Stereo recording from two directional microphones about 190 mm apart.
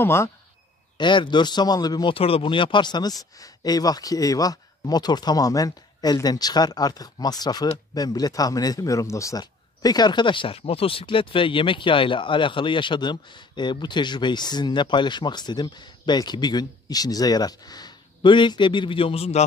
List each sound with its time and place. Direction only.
0.0 s speech: 15° left (ahead or behind)
0.9 s a man's voice: 25° left (ahead or behind)